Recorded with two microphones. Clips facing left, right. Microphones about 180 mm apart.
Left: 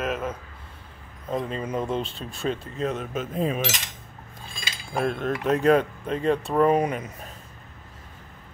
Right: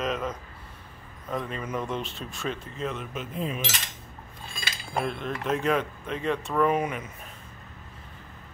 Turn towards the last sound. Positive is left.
turn(degrees=35)  # may be behind; listen again after turning